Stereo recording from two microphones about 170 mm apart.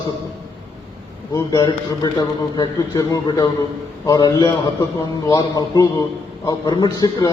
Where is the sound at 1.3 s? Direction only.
25° left (ahead or behind).